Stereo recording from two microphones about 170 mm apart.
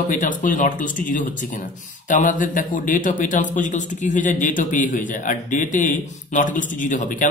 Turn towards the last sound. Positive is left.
turn(degrees=50)  # may be behind; listen again after turning